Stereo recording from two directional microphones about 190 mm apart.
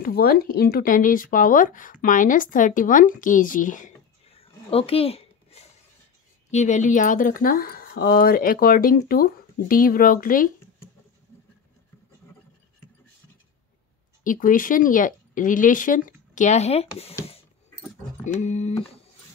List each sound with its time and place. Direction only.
0.0 s speech: 55° left (ahead or behind)
14.2 s speech: 45° left (ahead or behind)
18.2 s speech: 40° left (ahead or behind)